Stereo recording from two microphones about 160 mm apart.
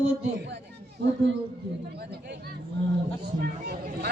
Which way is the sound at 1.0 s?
90° right.